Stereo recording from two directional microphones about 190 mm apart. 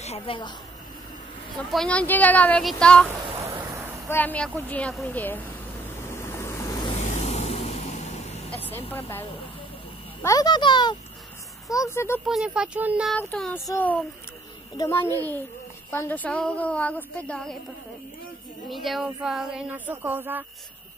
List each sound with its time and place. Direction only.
0.0 s a woman's voice: 30° left (ahead or behind)
1.6 s a woman's voice: 5° left (ahead or behind)
4.1 s a woman's voice: 10° left (ahead or behind)
6.0 s vehicle: 15° left (ahead or behind)
7.0 s vehicle: 35° left (ahead or behind)
8.5 s speech: 10° left (ahead or behind)
10.2 s a child's voice: 20° left (ahead or behind)
12.3 s speech: 5° right (ahead or behind)
13.1 s a woman's voice: 5° left (ahead or behind)
18.7 s speech: centre (ahead or behind)